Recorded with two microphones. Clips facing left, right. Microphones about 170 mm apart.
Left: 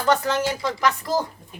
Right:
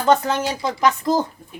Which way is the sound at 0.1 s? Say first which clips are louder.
Right 3 dB; 20° right (ahead or behind).